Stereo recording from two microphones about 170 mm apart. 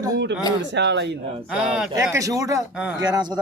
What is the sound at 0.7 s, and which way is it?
Speech, 90° right.